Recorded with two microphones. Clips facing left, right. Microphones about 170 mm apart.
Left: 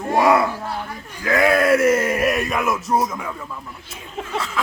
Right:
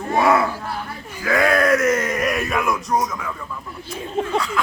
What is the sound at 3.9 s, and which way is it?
Speech, 35° right (ahead or behind).